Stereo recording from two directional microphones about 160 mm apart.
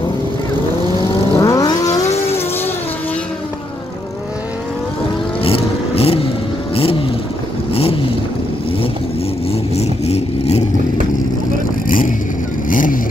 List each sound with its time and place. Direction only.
1.3 s vehicle: 20° left (ahead or behind)
5.4 s vehicle: 35° left (ahead or behind)
9.5 s vehicle: 40° left (ahead or behind)
12.6 s vehicle: 55° left (ahead or behind)